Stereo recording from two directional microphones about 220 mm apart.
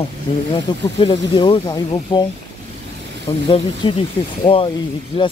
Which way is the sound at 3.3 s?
20° left (ahead or behind).